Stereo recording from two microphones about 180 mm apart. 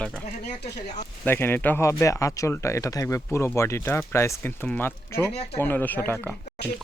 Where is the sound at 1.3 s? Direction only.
10° left (ahead or behind).